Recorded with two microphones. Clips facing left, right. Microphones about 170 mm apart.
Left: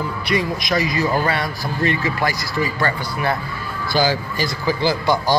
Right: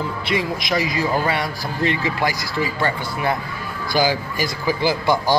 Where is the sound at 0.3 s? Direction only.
20° right (ahead or behind).